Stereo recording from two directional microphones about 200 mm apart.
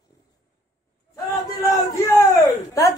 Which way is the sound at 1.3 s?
15° left (ahead or behind).